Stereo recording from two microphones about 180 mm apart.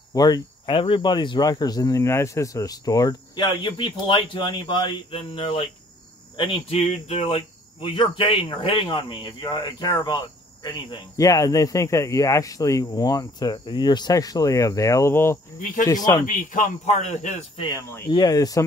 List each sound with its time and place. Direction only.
0.1 s speech: 20° left (ahead or behind)
15.6 s speech: 50° left (ahead or behind)
15.9 s speech: 20° left (ahead or behind)
16.3 s speech: 45° left (ahead or behind)
17.6 s speech: 15° left (ahead or behind)